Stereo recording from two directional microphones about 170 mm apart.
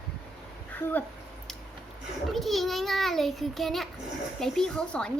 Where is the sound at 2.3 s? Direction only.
Centre (ahead or behind).